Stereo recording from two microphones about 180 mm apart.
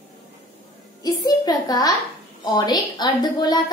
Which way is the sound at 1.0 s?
20° left (ahead or behind).